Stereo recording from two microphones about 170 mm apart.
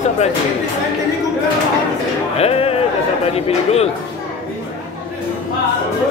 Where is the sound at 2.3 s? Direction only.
35° left (ahead or behind).